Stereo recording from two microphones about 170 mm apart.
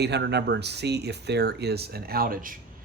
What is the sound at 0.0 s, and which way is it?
Speech, 85° right.